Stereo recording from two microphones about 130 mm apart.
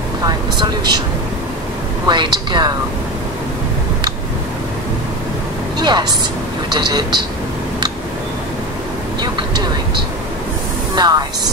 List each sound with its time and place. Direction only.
0.2 s speech: 35° right (ahead or behind)
2.0 s a woman's voice: 35° right (ahead or behind)
5.8 s a woman's voice: 35° right (ahead or behind)
11.0 s a woman's voice: 30° right (ahead or behind)